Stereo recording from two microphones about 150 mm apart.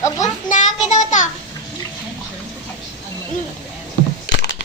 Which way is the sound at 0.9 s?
55° left (ahead or behind).